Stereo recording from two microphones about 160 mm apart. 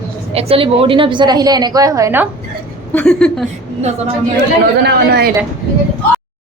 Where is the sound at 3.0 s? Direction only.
5° left (ahead or behind).